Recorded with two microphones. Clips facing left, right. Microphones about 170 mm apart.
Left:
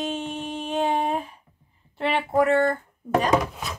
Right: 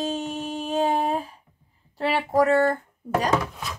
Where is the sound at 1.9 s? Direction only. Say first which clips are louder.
Even; 40° right (ahead or behind).